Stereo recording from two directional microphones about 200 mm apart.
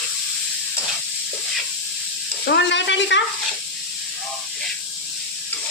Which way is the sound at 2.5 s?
60° left (ahead or behind).